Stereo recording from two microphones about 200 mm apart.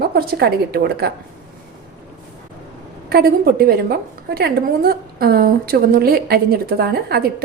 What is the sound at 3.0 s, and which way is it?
A woman's voice, 50° right (ahead or behind).